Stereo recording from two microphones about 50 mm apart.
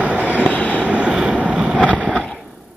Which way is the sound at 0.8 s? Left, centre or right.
Right.